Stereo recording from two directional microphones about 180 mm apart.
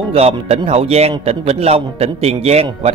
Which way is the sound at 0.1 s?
35° right (ahead or behind).